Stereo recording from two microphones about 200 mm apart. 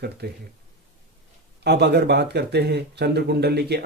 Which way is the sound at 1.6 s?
55° right (ahead or behind).